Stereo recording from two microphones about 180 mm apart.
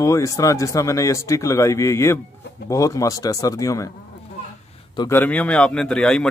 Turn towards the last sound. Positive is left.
turn(degrees=5)  # may be behind; listen again after turning